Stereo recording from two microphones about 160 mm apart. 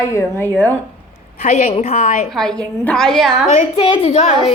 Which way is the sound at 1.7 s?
45° left (ahead or behind).